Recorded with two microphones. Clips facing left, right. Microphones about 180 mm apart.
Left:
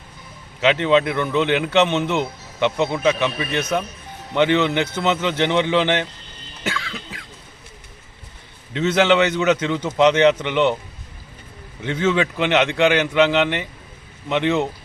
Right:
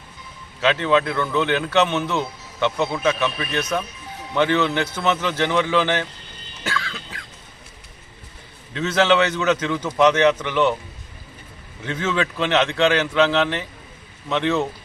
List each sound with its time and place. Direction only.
0.6 s a man's voice: 20° left (ahead or behind)
6.7 s cough: 20° left (ahead or behind)
8.7 s a man's voice: 20° left (ahead or behind)
11.8 s a man's voice: 20° left (ahead or behind)